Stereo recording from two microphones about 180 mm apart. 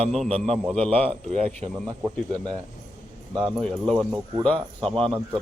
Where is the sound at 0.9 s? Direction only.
35° right (ahead or behind).